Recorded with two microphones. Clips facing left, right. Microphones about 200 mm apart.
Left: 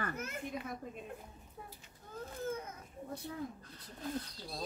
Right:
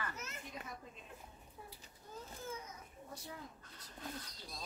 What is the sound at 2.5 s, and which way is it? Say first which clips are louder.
Baby cry: left 7 dB; 55° left (ahead or behind).